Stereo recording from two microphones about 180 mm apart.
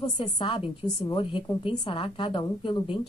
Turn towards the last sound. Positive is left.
turn(degrees=25)  # may be behind; listen again after turning